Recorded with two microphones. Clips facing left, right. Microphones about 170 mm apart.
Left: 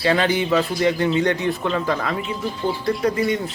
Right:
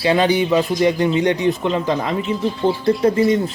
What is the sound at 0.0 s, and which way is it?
A man's voice, 15° right (ahead or behind).